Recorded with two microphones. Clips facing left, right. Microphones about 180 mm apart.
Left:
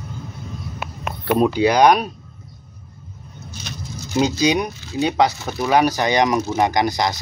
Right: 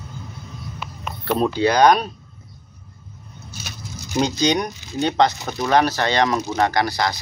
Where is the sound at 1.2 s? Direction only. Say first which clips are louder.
Left 3 dB; 10° left (ahead or behind).